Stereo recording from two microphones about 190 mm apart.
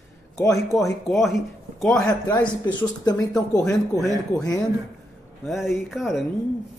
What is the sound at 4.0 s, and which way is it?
Speech, centre (ahead or behind).